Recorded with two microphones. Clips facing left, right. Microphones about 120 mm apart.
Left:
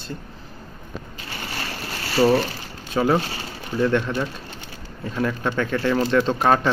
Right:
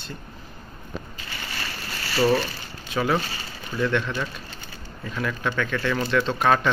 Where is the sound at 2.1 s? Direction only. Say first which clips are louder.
Left 3 dB; 25° left (ahead or behind).